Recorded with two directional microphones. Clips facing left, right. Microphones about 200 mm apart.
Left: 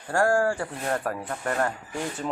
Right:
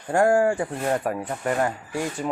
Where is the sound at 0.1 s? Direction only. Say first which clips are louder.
Right 4 dB; 20° right (ahead or behind).